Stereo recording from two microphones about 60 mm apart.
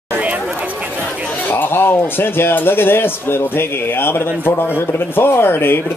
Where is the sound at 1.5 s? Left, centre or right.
Left.